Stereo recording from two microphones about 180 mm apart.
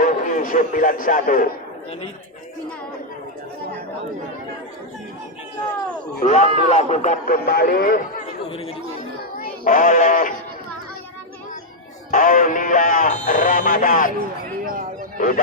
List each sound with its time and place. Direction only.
0.0 s a man's voice: 45° left (ahead or behind)
6.2 s a man's voice: 40° left (ahead or behind); by 8.0 s 55° left (ahead or behind)
8.4 s a man's voice: 30° left (ahead or behind)
9.4 s speech: 45° left (ahead or behind)
12.1 s speech: 45° left (ahead or behind)
14.6 s a sound: 50° right (ahead or behind)